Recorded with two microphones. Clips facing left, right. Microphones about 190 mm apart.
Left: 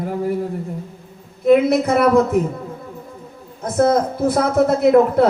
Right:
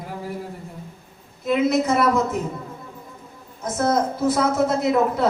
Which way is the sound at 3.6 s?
60° left (ahead or behind).